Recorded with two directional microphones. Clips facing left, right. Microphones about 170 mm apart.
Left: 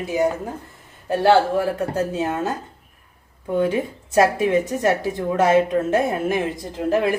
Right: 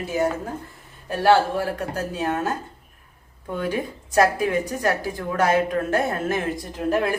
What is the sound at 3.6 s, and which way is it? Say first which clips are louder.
Speech: left 5 dB; 25° left (ahead or behind).